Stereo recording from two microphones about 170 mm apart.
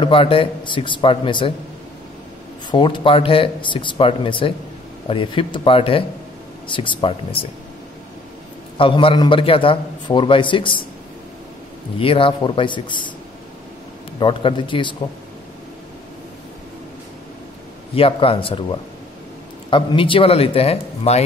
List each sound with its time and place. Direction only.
0.0 s a man's voice: 30° left (ahead or behind)
2.7 s a man's voice: 30° left (ahead or behind)
8.7 s a man's voice: 30° left (ahead or behind)
12.0 s a man's voice: 30° left (ahead or behind)
14.2 s a man's voice: 30° left (ahead or behind)
17.9 s a man's voice: 35° left (ahead or behind)